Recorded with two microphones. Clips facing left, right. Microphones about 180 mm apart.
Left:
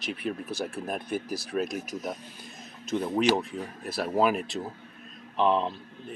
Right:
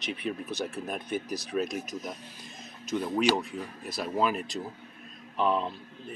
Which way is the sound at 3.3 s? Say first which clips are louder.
Left 2 dB; 5° left (ahead or behind).